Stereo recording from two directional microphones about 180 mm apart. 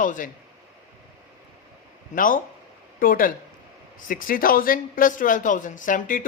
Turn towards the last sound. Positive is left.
turn(degrees=50)  # may be behind; listen again after turning